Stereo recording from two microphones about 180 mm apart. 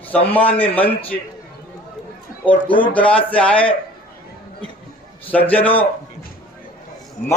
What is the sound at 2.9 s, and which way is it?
Speech, 5° left (ahead or behind).